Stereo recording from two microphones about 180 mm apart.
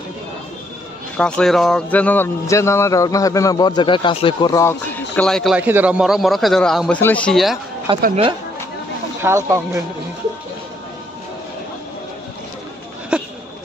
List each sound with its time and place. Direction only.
1.1 s a man's voice: 5° left (ahead or behind)
5.6 s a man's voice: 10° right (ahead or behind)
7.9 s a woman's voice: 25° right (ahead or behind)
9.2 s speech: 15° right (ahead or behind)
13.1 s a sound: 5° right (ahead or behind)